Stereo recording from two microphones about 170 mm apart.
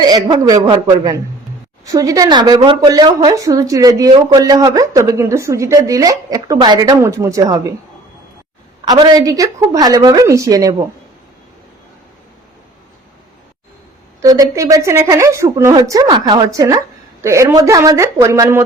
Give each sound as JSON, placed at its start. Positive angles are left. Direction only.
{"t": 0.0, "sound": "speech", "side_deg": -25}
{"t": 8.8, "sound": "speech", "side_deg": -25}
{"t": 14.2, "sound": "a woman's voice", "side_deg": -20}